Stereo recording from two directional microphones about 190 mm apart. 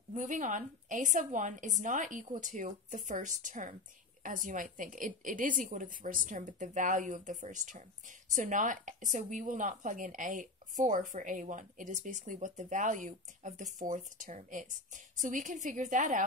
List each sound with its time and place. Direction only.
0.1 s a woman's voice: 40° right (ahead or behind)